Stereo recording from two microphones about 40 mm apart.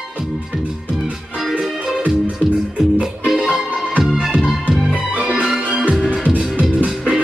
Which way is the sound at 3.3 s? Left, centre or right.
Centre.